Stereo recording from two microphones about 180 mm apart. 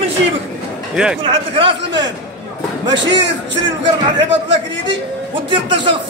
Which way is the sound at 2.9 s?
80° right.